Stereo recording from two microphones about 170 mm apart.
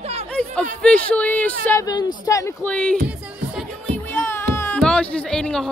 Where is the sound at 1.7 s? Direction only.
20° left (ahead or behind).